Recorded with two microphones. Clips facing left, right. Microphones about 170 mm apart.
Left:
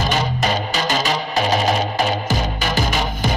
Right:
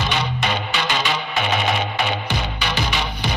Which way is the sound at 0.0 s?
40° left (ahead or behind).